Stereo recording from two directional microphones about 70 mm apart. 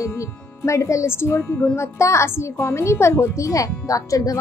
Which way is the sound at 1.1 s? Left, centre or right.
Left.